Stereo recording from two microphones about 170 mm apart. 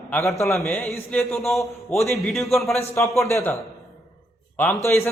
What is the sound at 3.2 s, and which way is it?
Speech, 15° left (ahead or behind).